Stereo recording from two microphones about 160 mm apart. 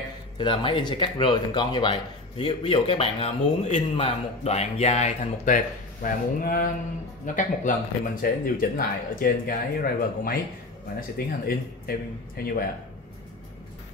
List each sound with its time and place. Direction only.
0.4 s speech: 30° left (ahead or behind); by 12.5 s 70° left (ahead or behind)